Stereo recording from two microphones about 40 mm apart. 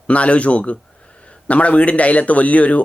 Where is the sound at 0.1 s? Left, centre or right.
Left.